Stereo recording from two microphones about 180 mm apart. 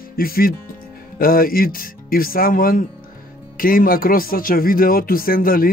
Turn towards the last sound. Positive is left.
turn(degrees=55)  # may be behind; listen again after turning